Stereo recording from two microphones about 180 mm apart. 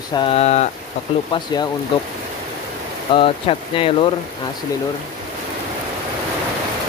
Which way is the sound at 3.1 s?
30° left (ahead or behind).